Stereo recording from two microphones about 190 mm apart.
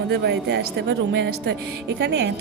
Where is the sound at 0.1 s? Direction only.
65° right (ahead or behind).